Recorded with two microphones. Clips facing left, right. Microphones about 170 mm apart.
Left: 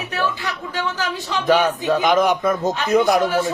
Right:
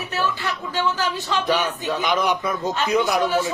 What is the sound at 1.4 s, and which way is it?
A man's voice, 50° left (ahead or behind).